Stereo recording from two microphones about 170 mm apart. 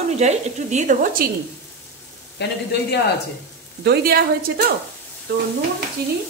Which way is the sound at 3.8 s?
70° right (ahead or behind).